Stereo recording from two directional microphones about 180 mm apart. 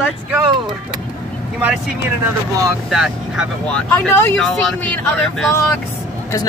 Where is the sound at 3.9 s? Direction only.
10° left (ahead or behind).